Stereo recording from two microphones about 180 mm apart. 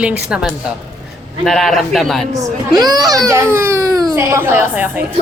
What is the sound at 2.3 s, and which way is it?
A woman's voice, 20° right (ahead or behind).